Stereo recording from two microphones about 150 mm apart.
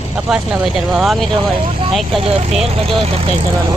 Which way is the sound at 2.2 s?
40° right (ahead or behind).